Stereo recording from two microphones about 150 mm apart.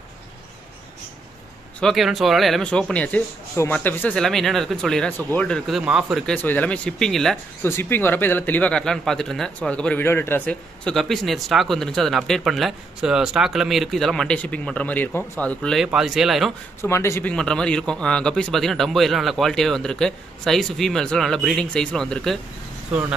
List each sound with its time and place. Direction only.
1.8 s speech: centre (ahead or behind)
5.7 s speech: 5° right (ahead or behind)
6.3 s speech: 10° left (ahead or behind)
7.6 s speech: 15° left (ahead or behind); by 16.5 s centre (ahead or behind)
16.8 s speech: 20° left (ahead or behind)
17.3 s speech: 5° left (ahead or behind)